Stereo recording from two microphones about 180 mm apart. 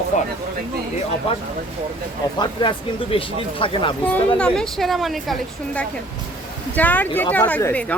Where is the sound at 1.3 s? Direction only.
30° left (ahead or behind).